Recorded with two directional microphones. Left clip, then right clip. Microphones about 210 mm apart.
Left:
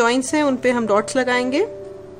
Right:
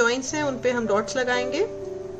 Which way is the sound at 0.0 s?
50° left (ahead or behind).